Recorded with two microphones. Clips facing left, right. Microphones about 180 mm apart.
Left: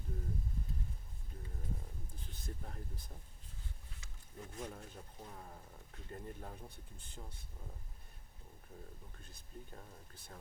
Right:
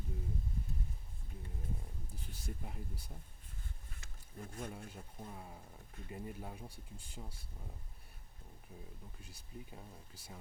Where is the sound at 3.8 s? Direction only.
55° right (ahead or behind).